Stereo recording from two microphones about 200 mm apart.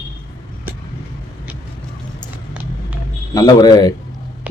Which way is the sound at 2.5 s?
5° right (ahead or behind).